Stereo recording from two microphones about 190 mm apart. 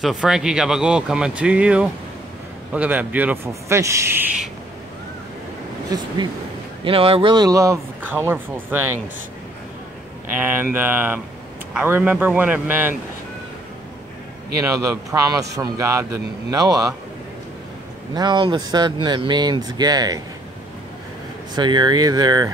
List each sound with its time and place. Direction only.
0.0 s speech: centre (ahead or behind)
6.8 s speech: 30° right (ahead or behind); by 9.0 s 10° right (ahead or behind)
10.3 s speech: 10° right (ahead or behind)
14.6 s speech: 15° right (ahead or behind)
18.1 s speech: 25° right (ahead or behind)
21.5 s speech: 25° right (ahead or behind)